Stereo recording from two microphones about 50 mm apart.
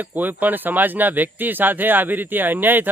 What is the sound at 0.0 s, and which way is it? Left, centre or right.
Speech, right.